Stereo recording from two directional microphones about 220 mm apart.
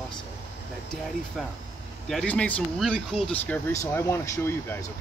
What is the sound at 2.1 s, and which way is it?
Speech, 5° left (ahead or behind).